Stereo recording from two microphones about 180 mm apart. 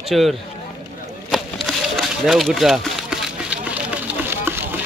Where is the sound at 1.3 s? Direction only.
Centre (ahead or behind).